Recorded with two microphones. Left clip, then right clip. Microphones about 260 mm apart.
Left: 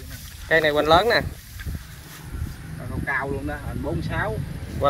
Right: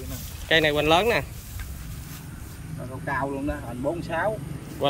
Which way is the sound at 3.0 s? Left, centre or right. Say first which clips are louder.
Left 2 dB; centre.